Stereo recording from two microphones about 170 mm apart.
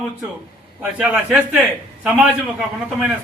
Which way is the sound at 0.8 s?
5° right (ahead or behind).